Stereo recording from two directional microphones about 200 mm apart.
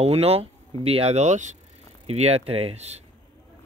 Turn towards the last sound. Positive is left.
turn(degrees=-30)  # may be behind; listen again after turning